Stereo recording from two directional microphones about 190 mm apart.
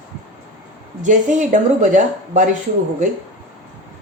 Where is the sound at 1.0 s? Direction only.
40° right (ahead or behind).